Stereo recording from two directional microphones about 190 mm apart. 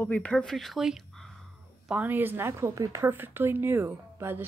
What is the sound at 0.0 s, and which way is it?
Speech, 5° left (ahead or behind).